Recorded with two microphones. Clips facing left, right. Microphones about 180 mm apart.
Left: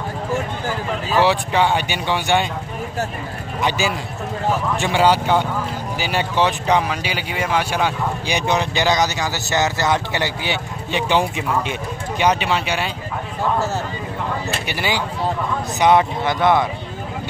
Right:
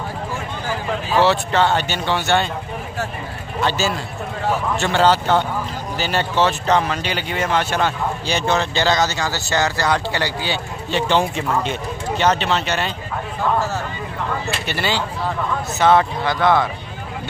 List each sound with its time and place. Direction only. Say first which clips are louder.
1.2 s speech: right 1 dB; 15° left (ahead or behind)
3.6 s speech: even; 15° left (ahead or behind)
14.7 s speech: right 1 dB; 15° left (ahead or behind)